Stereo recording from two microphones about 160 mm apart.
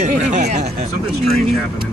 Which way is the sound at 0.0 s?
50° right (ahead or behind).